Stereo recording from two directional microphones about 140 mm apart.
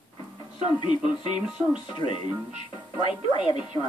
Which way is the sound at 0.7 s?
35° left (ahead or behind).